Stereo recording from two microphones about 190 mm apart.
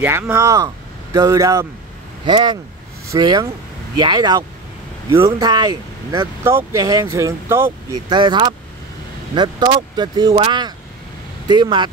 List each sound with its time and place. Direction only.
0.0 s speech: 10° right (ahead or behind)
8.1 s speech: 25° right (ahead or behind)